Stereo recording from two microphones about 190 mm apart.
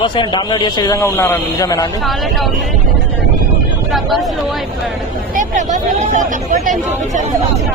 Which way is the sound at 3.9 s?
Centre (ahead or behind).